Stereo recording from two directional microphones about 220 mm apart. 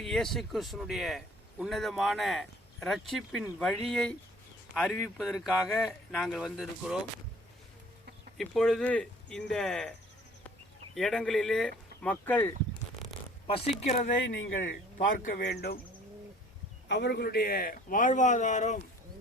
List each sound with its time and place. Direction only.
0.0 s a man's voice: centre (ahead or behind)
8.4 s a man's voice: centre (ahead or behind)
10.9 s a man's voice: 5° left (ahead or behind)
13.5 s a man's voice: 25° left (ahead or behind); by 15.8 s 45° left (ahead or behind)
16.9 s a man's voice: 50° left (ahead or behind); by 18.8 s 35° left (ahead or behind)